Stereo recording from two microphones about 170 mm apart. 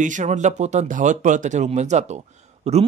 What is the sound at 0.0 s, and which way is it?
Speech, 45° right (ahead or behind).